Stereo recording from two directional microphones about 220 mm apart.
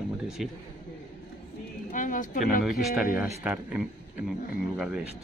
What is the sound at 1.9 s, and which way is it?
Speech, 35° left (ahead or behind).